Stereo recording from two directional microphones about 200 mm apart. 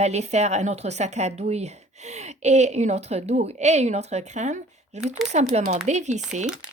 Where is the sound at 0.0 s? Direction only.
35° right (ahead or behind).